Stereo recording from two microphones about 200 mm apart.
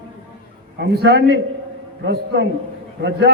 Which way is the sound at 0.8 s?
55° right (ahead or behind).